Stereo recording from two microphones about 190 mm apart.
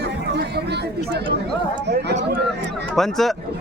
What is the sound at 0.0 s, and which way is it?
Chatter, 60° right (ahead or behind).